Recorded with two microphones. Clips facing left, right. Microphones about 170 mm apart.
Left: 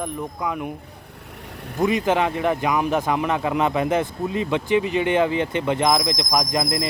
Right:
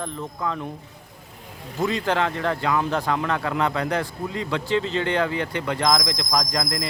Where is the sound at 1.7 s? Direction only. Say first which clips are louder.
Left 3 dB; 20° left (ahead or behind).